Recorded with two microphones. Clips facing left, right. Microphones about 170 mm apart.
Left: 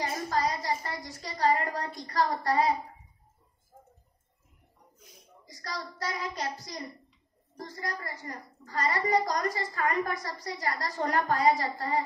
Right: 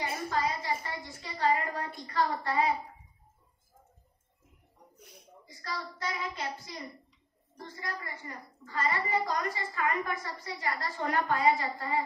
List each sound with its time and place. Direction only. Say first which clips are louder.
0.0 s a woman's voice: left 2 dB; 40° left (ahead or behind)
4.9 s a sound: right 3 dB; 65° right (ahead or behind)
5.4 s a woman's voice: left 1 dB; 40° left (ahead or behind)